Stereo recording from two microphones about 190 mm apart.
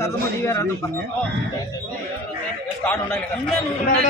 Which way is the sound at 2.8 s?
10° left (ahead or behind).